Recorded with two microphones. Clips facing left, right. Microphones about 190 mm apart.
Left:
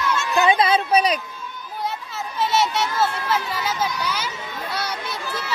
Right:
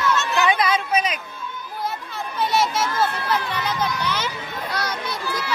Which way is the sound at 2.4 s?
Centre (ahead or behind).